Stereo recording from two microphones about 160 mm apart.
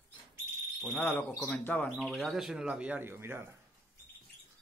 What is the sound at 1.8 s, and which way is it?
Speech, centre (ahead or behind).